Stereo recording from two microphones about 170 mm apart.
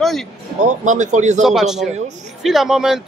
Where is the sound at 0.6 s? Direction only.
45° right (ahead or behind).